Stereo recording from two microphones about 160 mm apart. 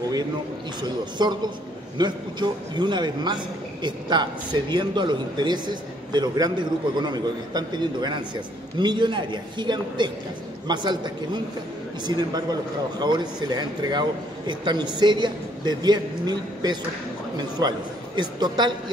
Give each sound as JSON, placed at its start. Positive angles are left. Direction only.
{"t": 0.7, "sound": "a man's voice", "side_deg": -25}